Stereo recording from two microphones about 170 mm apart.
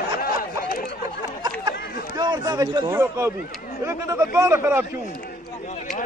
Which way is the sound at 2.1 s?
25° right (ahead or behind).